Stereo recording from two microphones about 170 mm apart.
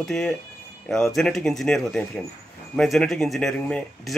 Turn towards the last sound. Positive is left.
turn(degrees=0)  # may be behind; listen again after turning